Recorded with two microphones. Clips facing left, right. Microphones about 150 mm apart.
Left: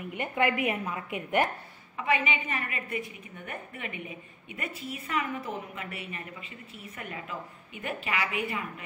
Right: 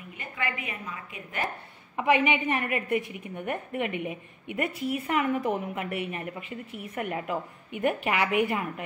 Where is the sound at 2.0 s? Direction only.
65° right (ahead or behind).